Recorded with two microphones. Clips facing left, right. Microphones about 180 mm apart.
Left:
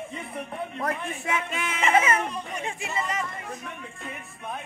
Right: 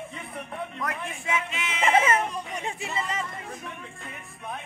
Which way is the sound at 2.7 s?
30° right (ahead or behind).